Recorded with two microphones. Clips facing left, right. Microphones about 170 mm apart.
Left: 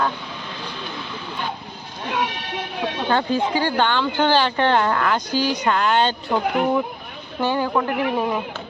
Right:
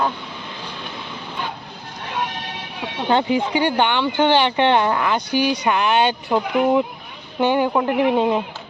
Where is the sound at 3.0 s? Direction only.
20° right (ahead or behind).